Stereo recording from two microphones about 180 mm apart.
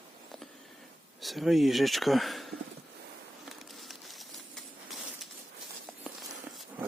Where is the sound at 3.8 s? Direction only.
Centre (ahead or behind).